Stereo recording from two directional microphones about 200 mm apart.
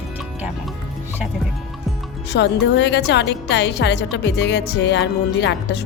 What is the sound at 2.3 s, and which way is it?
Speech, 60° left (ahead or behind).